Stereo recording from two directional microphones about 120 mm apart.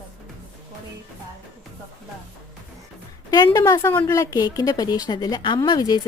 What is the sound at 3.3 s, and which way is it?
Speech, 35° left (ahead or behind).